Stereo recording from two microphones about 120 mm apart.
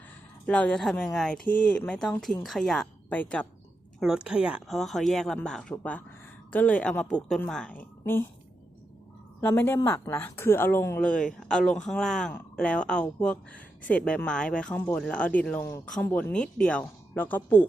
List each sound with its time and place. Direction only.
0.4 s speech: 10° left (ahead or behind)
2.4 s speech: centre (ahead or behind)
4.0 s speech: 5° right (ahead or behind); by 8.3 s 20° left (ahead or behind)
9.4 s speech: 20° left (ahead or behind)
11.3 s speech: 5° left (ahead or behind)